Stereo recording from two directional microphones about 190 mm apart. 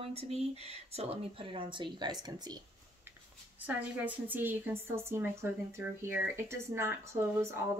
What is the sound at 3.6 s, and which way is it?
A woman's voice, 10° right (ahead or behind).